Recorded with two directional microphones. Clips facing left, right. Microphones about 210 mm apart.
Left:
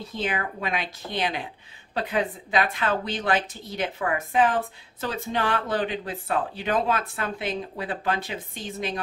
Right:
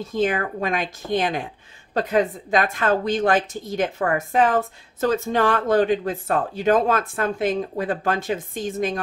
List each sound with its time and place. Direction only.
0.0 s a woman's voice: 45° right (ahead or behind)